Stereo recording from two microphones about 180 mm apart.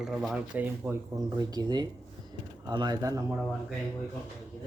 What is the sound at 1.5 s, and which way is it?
Speech, 20° right (ahead or behind).